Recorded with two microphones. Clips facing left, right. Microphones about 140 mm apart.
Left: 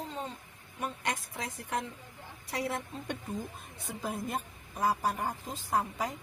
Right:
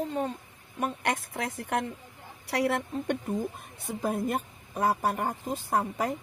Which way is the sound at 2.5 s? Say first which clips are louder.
Right 7 dB; 80° right.